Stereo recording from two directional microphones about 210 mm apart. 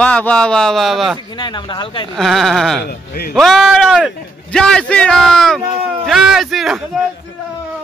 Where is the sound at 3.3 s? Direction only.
Centre (ahead or behind).